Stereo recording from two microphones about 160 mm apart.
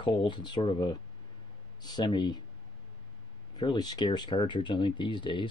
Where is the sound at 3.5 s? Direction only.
25° left (ahead or behind).